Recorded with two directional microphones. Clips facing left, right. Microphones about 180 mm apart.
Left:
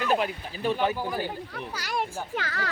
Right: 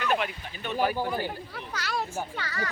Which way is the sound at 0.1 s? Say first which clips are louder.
Left 3 dB; 35° left (ahead or behind).